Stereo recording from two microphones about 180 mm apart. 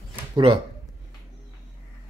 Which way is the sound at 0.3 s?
25° right (ahead or behind).